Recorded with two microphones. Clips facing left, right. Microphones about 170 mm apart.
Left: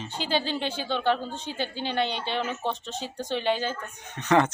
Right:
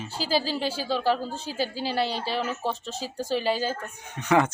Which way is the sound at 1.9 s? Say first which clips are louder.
Even; 35° right (ahead or behind).